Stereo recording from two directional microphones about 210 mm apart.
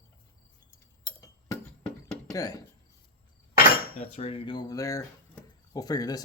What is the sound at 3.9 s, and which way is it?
Speech, 30° left (ahead or behind).